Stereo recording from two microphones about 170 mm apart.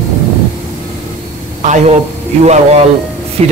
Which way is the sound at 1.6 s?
45° right (ahead or behind).